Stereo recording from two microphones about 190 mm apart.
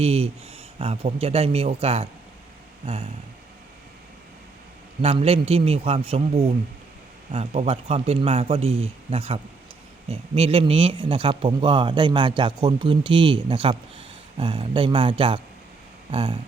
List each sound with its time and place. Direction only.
0.0 s a man's voice: 30° right (ahead or behind)
5.0 s a man's voice: 30° right (ahead or behind)
16.1 s speech: 25° right (ahead or behind)